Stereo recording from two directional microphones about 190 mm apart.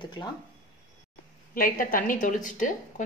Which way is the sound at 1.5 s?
45° left (ahead or behind).